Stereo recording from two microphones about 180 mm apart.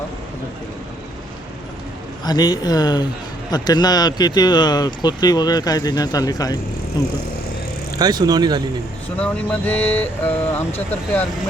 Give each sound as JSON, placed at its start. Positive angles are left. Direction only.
{"t": 2.2, "sound": "speech", "side_deg": 20}
{"t": 7.9, "sound": "speech", "side_deg": -20}
{"t": 9.1, "sound": "speech", "side_deg": 5}